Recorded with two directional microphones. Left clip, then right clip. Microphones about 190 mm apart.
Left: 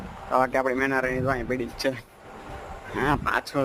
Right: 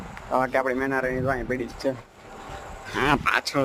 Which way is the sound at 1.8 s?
65° left (ahead or behind).